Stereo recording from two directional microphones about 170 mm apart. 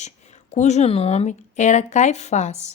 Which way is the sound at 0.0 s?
45° left (ahead or behind).